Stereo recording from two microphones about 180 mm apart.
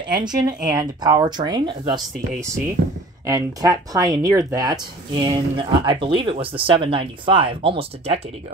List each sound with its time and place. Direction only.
0.1 s speech: 25° right (ahead or behind)